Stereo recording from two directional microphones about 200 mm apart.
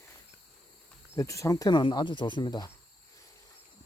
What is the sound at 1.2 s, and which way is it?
Speech, 15° left (ahead or behind).